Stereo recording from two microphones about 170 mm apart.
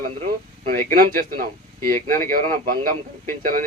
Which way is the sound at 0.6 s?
60° right (ahead or behind).